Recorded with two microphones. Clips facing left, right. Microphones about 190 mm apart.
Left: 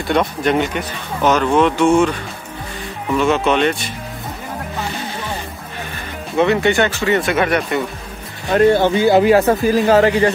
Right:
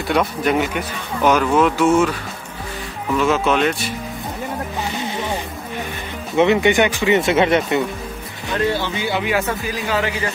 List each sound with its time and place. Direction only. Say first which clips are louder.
0.1 s speech: left 2 dB; 5° right (ahead or behind)
3.2 s speech: left 2 dB; centre (ahead or behind)
6.3 s speech: even; 15° right (ahead or behind)
8.5 s speech: left 9 dB; 50° left (ahead or behind)